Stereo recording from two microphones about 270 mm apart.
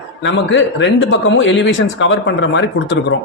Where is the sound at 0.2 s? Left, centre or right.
Left.